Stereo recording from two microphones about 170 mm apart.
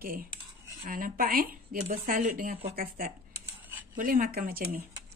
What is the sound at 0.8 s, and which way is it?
Speech, 55° right (ahead or behind).